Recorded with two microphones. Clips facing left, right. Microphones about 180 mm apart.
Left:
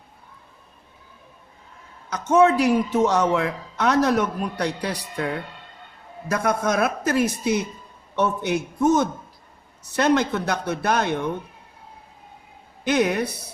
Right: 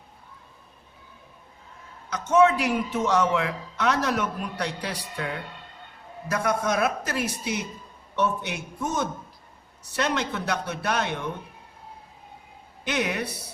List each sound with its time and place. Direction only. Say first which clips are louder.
2.0 s a man's voice: left 2 dB; 40° left (ahead or behind)
12.8 s a woman's voice: left 7 dB; 40° left (ahead or behind)